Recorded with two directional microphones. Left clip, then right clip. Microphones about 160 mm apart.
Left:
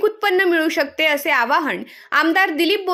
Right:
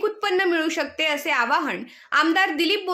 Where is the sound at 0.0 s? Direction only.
30° left (ahead or behind).